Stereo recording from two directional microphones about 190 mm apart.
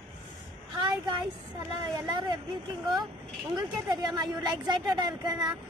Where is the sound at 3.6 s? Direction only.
20° right (ahead or behind).